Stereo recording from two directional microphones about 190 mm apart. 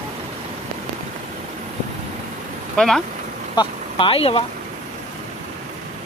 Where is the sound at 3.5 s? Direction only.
30° left (ahead or behind).